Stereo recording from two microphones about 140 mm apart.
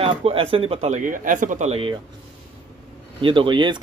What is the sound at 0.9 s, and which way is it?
Speech, 70° right (ahead or behind).